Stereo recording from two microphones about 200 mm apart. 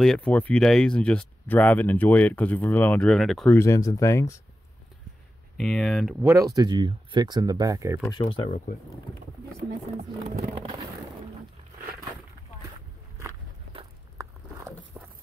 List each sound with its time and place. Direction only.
0.0 s speech: 5° left (ahead or behind)
3.5 s speech: 15° left (ahead or behind)
5.6 s speech: centre (ahead or behind)
6.2 s speech: 15° right (ahead or behind)
8.1 s speech: 25° left (ahead or behind)
8.5 s speech: 35° left (ahead or behind)
14.2 s biting: 15° right (ahead or behind)
15.0 s horse: 5° right (ahead or behind)